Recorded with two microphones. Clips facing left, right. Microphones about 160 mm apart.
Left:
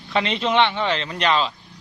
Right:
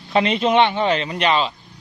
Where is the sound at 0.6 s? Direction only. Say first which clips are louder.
Right 2 dB; 40° right (ahead or behind).